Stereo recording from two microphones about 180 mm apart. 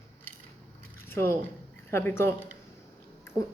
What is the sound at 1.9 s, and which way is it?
Speech, 15° left (ahead or behind).